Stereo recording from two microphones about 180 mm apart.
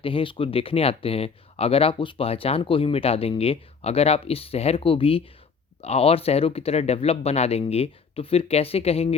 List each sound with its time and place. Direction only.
0.0 s speech: 30° left (ahead or behind)